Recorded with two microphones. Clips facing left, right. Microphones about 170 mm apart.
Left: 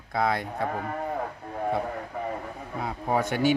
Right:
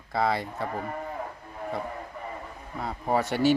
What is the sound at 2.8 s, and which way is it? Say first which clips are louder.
Speech: even; centre (ahead or behind).